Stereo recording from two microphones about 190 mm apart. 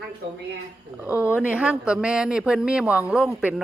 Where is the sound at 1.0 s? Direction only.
10° right (ahead or behind).